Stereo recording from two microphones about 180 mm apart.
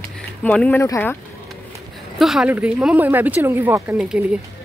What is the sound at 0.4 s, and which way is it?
Speech, 5° left (ahead or behind).